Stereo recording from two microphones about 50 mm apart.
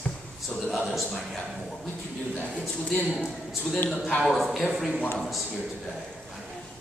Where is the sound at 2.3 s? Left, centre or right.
Left.